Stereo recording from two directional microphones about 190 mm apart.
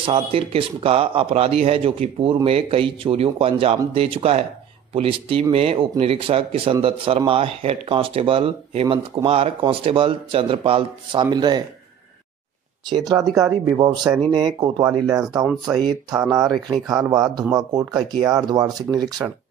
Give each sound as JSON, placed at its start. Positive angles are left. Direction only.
{"t": 0.0, "sound": "speech", "side_deg": -30}
{"t": 12.9, "sound": "speech", "side_deg": -20}